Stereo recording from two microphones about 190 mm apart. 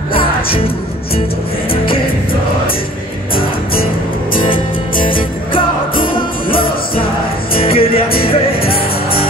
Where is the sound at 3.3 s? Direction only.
50° left (ahead or behind).